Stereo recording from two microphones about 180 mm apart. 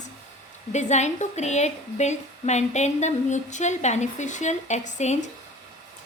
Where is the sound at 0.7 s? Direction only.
40° left (ahead or behind).